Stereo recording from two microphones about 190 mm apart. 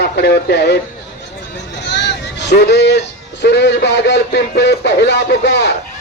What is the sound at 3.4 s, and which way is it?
A man's voice, 65° left (ahead or behind).